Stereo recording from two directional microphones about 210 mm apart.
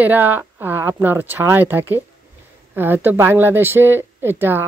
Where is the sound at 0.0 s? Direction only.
10° right (ahead or behind).